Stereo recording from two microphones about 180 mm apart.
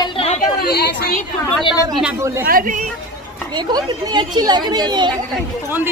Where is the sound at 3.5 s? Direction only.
25° right (ahead or behind).